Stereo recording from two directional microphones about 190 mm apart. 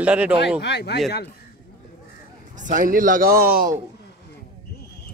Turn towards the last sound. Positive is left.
turn(degrees=-50)  # may be behind; listen again after turning